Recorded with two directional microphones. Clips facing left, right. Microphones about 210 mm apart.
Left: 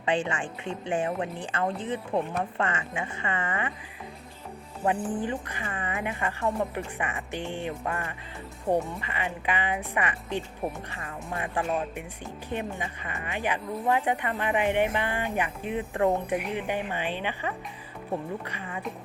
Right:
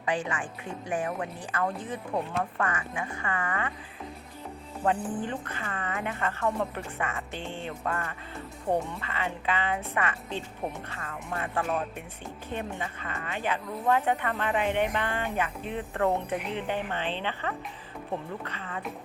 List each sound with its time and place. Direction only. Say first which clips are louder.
0.0 s a woman's voice: left 3 dB; 25° left (ahead or behind)
4.9 s a woman's voice: left 1 dB; 10° left (ahead or behind)